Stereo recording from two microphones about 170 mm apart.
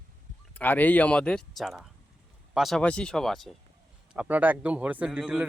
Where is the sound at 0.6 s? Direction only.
10° left (ahead or behind).